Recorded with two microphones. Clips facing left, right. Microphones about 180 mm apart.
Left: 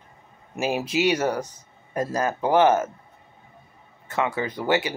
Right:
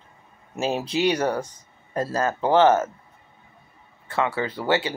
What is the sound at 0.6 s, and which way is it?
Speech, 10° left (ahead or behind).